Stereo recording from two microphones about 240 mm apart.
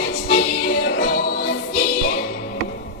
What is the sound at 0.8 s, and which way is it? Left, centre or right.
Music, left.